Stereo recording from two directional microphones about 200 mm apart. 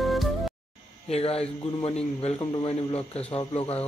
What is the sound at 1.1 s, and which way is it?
A man's voice, 30° left (ahead or behind).